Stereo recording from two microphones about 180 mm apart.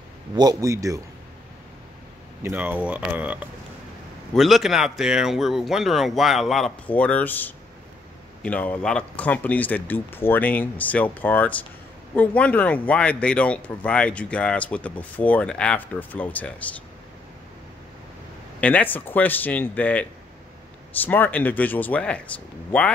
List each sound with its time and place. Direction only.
0.4 s speech: 20° right (ahead or behind)
2.4 s speech: 10° right (ahead or behind); by 16.7 s 10° left (ahead or behind)
18.6 s speech: 10° left (ahead or behind)